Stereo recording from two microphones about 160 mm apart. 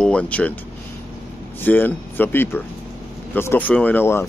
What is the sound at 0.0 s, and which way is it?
Speech, 5° left (ahead or behind).